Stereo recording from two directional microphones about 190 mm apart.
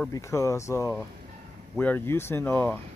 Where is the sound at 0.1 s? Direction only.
15° left (ahead or behind).